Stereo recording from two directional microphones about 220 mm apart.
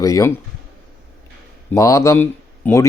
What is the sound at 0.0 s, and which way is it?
Speech, 15° left (ahead or behind).